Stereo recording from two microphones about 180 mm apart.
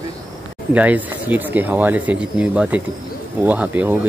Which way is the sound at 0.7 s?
10° right (ahead or behind).